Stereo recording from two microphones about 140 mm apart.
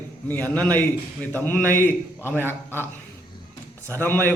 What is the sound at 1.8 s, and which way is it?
A man's voice, 15° right (ahead or behind).